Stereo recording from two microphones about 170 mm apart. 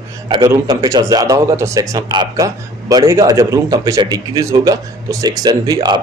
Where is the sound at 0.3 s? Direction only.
25° right (ahead or behind).